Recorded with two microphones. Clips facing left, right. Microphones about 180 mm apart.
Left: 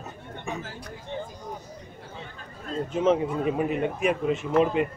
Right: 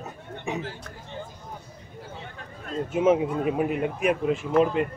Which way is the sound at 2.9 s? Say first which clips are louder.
Right 2 dB; 10° right (ahead or behind).